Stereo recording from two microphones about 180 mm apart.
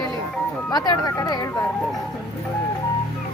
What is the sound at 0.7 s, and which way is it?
Speech, 20° left (ahead or behind).